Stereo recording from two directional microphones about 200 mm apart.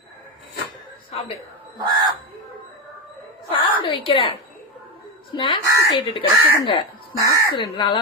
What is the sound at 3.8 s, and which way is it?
Speech, 25° left (ahead or behind).